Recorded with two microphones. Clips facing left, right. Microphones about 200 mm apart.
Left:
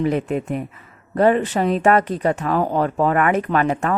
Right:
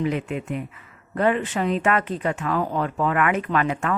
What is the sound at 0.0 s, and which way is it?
Speech, 40° left (ahead or behind).